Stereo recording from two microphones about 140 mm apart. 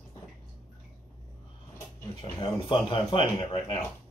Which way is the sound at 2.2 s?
35° left (ahead or behind).